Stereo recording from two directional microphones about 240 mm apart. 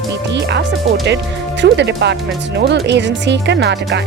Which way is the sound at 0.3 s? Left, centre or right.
Right.